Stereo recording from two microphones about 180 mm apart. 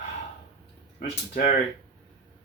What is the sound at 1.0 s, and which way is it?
Speech, 60° left (ahead or behind).